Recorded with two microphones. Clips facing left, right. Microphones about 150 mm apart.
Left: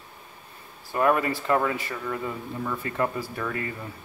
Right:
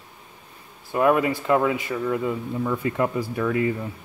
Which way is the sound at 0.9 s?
10° right (ahead or behind).